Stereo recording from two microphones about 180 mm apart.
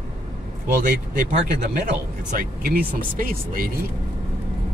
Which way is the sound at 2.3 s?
55° right (ahead or behind).